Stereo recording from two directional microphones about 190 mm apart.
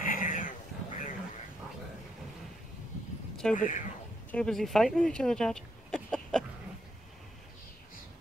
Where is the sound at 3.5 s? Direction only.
40° left (ahead or behind).